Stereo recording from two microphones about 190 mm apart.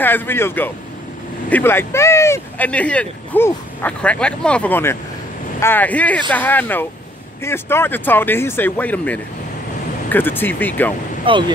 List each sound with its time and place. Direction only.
0.0 s speech: 10° left (ahead or behind)
11.2 s speech: 25° right (ahead or behind)